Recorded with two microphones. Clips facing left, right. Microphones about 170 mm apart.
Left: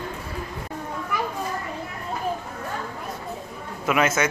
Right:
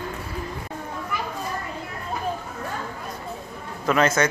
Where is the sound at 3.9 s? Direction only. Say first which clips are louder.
Right 2 dB; 5° left (ahead or behind).